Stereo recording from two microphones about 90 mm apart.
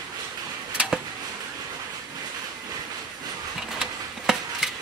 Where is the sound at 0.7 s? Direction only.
10° right (ahead or behind).